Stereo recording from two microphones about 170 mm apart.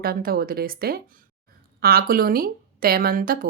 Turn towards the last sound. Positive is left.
turn(degrees=-55)  # may be behind; listen again after turning